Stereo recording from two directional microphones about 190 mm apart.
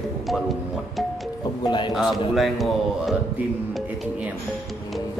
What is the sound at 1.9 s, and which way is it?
A man's voice, centre (ahead or behind).